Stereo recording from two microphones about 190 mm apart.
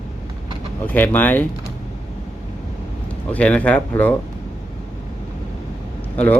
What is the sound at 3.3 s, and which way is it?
Speech, 5° left (ahead or behind).